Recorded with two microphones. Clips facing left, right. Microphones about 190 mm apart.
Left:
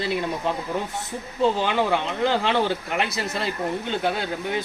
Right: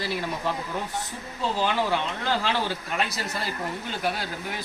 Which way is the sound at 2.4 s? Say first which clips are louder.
Left 5 dB; 20° left (ahead or behind).